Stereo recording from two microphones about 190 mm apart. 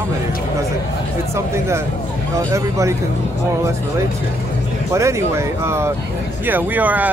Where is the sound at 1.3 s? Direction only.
15° right (ahead or behind).